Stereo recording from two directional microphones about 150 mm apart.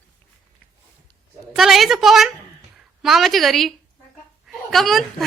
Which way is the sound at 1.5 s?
Centre (ahead or behind).